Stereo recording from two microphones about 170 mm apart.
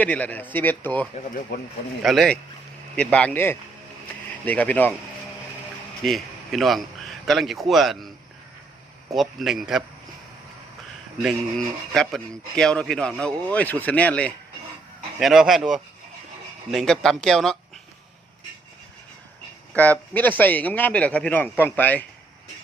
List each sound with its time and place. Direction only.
0.0 s a man's voice: 10° left (ahead or behind)
1.5 s speech: 85° left
2.0 s a man's voice: centre (ahead or behind)
6.1 s a man's voice: centre (ahead or behind)
9.1 s speech: centre (ahead or behind)
11.2 s a man's voice: centre (ahead or behind)
19.7 s a man's voice: 10° left (ahead or behind)